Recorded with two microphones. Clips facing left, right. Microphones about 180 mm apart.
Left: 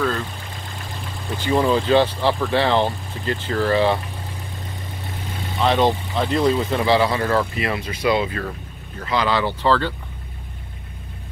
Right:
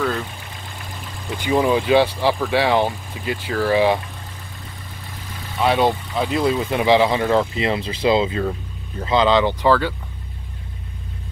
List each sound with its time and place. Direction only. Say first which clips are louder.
1.3 s speech: right 1 dB; 15° right (ahead or behind)
5.6 s speech: even; 10° right (ahead or behind)